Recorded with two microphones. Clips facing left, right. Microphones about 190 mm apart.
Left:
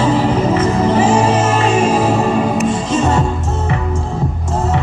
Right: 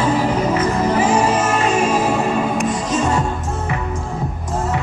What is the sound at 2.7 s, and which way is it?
Music, 25° left (ahead or behind).